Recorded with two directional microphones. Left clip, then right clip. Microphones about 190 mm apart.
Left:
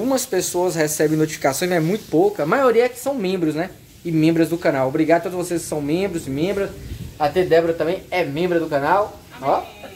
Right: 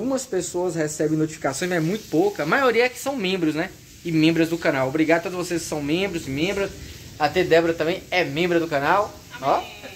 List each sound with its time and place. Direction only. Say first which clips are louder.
0.0 s speech: left 5 dB; 5° left (ahead or behind)
7.2 s speech: left 2 dB; 15° right (ahead or behind)